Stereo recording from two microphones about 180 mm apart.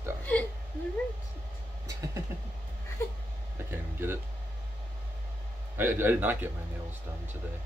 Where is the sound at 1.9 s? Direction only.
15° right (ahead or behind).